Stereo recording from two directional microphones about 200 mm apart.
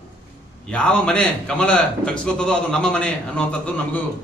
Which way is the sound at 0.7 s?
5° left (ahead or behind).